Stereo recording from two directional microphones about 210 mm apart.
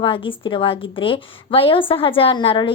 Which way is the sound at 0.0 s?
25° left (ahead or behind).